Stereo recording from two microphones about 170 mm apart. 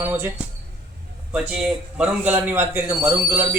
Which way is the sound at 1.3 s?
5° right (ahead or behind).